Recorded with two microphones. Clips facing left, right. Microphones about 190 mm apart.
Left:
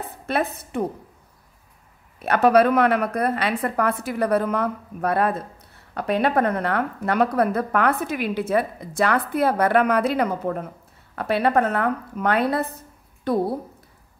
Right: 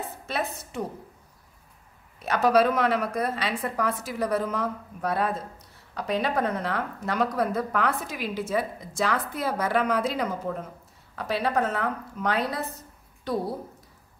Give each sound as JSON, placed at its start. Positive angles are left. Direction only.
{"t": 0.3, "sound": "a woman's voice", "side_deg": 60}
{"t": 2.1, "sound": "a woman's voice", "side_deg": 60}